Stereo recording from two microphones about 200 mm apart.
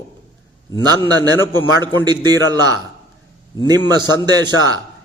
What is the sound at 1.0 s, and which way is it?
A man's voice, 20° right (ahead or behind).